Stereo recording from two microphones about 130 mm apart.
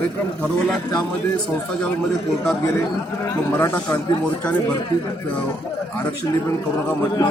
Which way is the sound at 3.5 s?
20° left (ahead or behind).